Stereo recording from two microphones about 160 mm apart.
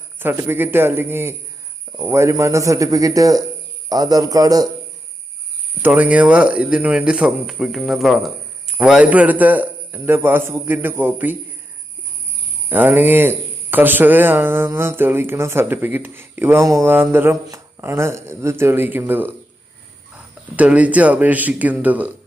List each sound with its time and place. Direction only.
0.2 s speech: 15° right (ahead or behind)
5.8 s speech: 10° right (ahead or behind)
12.6 s speech: 10° right (ahead or behind)